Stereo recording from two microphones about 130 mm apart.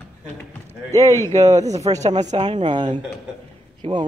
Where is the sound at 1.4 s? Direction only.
60° right (ahead or behind).